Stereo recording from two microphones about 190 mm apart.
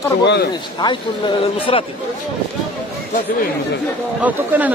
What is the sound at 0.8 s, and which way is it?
Speech, 25° left (ahead or behind).